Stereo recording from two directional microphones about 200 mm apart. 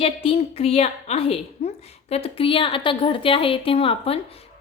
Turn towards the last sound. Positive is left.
turn(degrees=30)  # may be behind; listen again after turning